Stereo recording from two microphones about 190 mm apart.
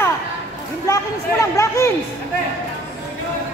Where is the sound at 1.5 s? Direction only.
15° left (ahead or behind).